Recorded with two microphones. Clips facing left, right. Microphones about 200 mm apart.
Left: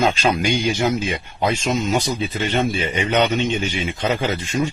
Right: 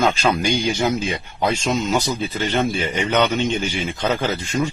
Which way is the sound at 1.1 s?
15° left (ahead or behind).